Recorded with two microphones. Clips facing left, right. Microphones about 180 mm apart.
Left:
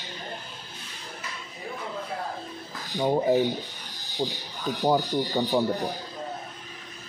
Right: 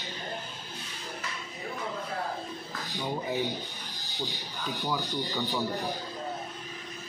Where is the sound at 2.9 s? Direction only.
45° left (ahead or behind).